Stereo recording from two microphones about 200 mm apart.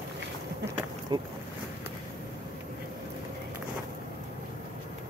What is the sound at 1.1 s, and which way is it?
Speech, 20° right (ahead or behind).